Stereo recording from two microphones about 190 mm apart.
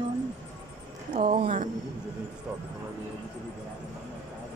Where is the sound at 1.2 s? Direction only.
35° right (ahead or behind).